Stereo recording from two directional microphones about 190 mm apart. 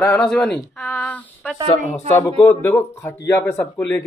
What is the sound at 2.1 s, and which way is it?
Speech, 15° left (ahead or behind).